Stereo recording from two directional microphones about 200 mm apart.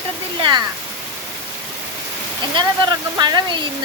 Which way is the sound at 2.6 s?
20° right (ahead or behind).